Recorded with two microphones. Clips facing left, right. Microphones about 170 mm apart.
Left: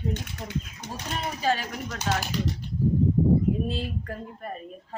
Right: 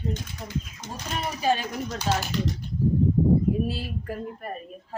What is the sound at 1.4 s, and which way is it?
Speech, 15° right (ahead or behind).